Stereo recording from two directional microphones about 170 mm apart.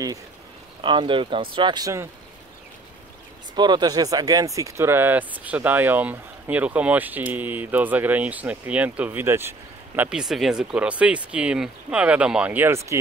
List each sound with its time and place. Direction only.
0.8 s speech: 30° right (ahead or behind)
3.5 s speech: 25° right (ahead or behind)